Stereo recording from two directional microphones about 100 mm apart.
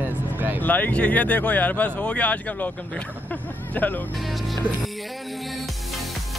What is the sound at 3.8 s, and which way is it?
Speech, 15° left (ahead or behind).